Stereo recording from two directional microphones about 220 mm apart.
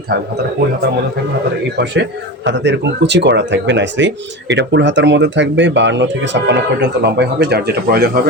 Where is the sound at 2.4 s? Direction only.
55° right (ahead or behind).